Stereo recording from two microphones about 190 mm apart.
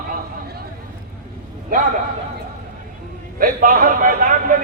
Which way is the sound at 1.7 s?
50° right (ahead or behind).